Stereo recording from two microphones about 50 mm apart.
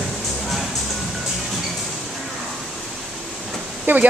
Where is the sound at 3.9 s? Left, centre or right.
Right.